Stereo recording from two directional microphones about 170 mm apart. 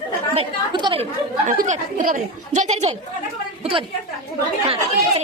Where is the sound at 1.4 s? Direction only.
45° right (ahead or behind).